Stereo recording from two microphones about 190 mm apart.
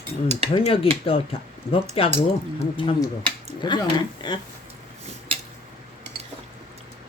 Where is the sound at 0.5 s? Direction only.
30° left (ahead or behind).